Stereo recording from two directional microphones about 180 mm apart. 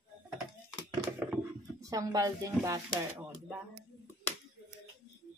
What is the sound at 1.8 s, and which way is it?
Speech, 20° right (ahead or behind).